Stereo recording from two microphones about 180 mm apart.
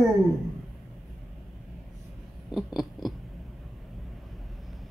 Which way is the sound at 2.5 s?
Centre (ahead or behind).